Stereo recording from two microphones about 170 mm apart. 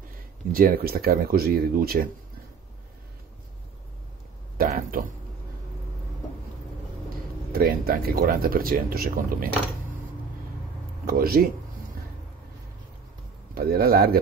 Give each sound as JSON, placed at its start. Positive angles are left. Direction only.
{"t": 0.5, "sound": "speech", "side_deg": -60}
{"t": 4.6, "sound": "speech", "side_deg": -55}
{"t": 7.5, "sound": "speech", "side_deg": -60}
{"t": 11.1, "sound": "speech", "side_deg": -60}
{"t": 13.6, "sound": "speech", "side_deg": -60}